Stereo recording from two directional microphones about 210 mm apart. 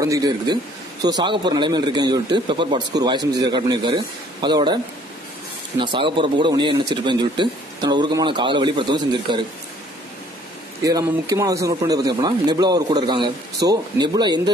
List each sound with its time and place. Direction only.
0.0 s a man's voice: 15° right (ahead or behind)
5.8 s a man's voice: 25° right (ahead or behind)
10.8 s a man's voice: 15° right (ahead or behind)